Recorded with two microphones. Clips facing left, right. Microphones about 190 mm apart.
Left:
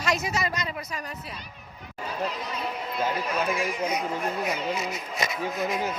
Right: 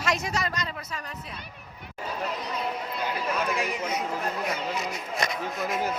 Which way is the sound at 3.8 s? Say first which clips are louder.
Left 2 dB; 15° left (ahead or behind).